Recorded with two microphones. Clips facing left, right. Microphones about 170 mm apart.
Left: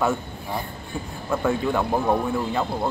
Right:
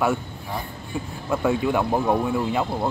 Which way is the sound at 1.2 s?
10° right (ahead or behind).